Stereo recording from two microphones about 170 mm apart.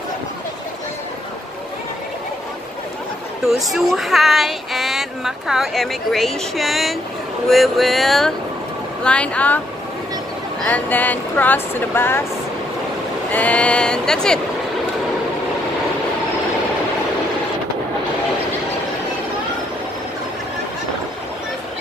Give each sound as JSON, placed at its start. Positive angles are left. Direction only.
{"t": 3.4, "sound": "speech", "side_deg": 0}
{"t": 10.7, "sound": "speech", "side_deg": 10}
{"t": 13.3, "sound": "speech", "side_deg": 10}